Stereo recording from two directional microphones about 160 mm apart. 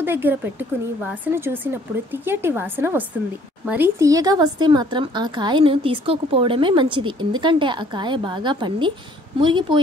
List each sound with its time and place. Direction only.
0.0 s speech: 15° right (ahead or behind); by 9.8 s 30° right (ahead or behind)